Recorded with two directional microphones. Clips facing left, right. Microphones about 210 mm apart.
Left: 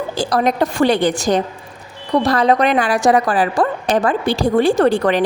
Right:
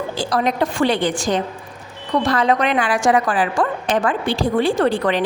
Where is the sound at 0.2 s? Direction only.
40° left (ahead or behind).